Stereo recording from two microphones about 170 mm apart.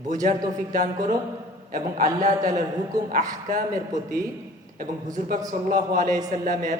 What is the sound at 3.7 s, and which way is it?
Speech, 20° right (ahead or behind).